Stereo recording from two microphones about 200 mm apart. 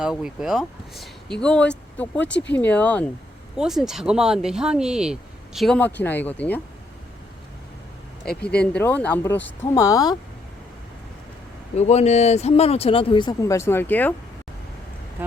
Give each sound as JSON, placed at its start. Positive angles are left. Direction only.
{"t": 0.0, "sound": "speech", "side_deg": -5}
{"t": 8.2, "sound": "speech", "side_deg": 5}
{"t": 11.8, "sound": "speech", "side_deg": 35}